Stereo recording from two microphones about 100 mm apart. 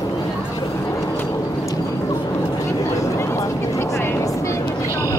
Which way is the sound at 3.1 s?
30° left (ahead or behind).